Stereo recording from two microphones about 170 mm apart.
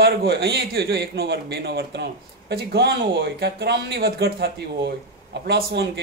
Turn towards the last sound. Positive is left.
turn(degrees=-75)  # may be behind; listen again after turning